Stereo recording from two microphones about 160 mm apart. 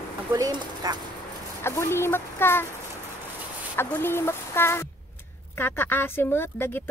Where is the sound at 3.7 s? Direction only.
15° left (ahead or behind).